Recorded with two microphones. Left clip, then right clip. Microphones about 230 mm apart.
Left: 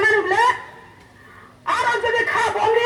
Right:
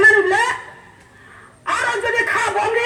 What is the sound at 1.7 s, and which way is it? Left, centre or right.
Chuckle, right.